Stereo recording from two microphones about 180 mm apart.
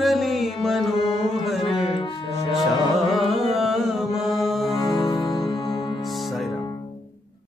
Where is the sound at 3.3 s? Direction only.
Centre (ahead or behind).